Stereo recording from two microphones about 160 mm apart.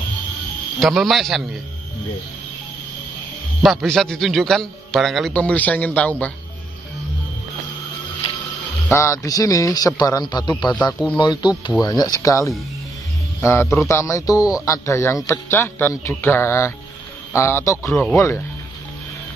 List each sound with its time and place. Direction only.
0.7 s a man's voice: centre (ahead or behind)
3.6 s a man's voice: centre (ahead or behind)
8.9 s a man's voice: 20° left (ahead or behind)
10.7 s speech: 10° left (ahead or behind)
11.1 s a man's voice: 30° left (ahead or behind)